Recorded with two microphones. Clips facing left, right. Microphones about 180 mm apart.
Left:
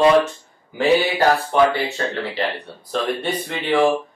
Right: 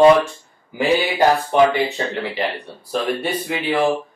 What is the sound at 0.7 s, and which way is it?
Speech, 15° right (ahead or behind).